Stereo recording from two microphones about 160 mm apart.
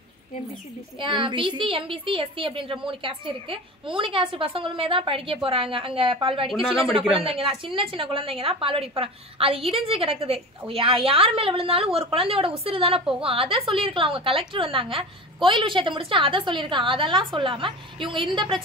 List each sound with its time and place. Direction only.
1.0 s a woman's voice: 30° right (ahead or behind)
6.5 s speech: 5° right (ahead or behind)
7.2 s a woman's voice: 35° right (ahead or behind)